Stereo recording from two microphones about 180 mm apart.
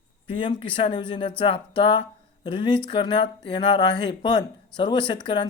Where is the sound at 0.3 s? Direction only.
30° left (ahead or behind).